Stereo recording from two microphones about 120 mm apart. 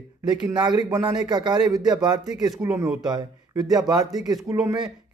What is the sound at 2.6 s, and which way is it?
Speech, 15° right (ahead or behind).